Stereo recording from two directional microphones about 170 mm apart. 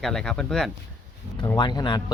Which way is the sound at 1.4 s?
25° left (ahead or behind).